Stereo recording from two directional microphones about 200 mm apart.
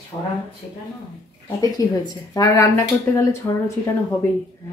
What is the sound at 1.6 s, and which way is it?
Speech, 20° left (ahead or behind).